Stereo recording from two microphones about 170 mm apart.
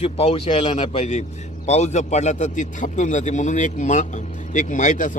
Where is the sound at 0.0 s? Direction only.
35° left (ahead or behind).